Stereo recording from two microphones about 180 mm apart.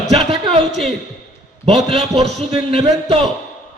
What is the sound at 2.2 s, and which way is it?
Speech, 35° right (ahead or behind).